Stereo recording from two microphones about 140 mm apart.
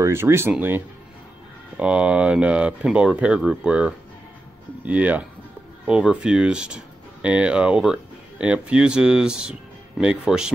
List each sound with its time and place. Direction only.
0.0 s speech: 20° right (ahead or behind)